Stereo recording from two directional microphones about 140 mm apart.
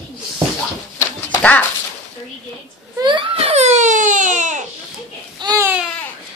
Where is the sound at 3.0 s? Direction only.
35° right (ahead or behind); by 4.6 s 60° right (ahead or behind).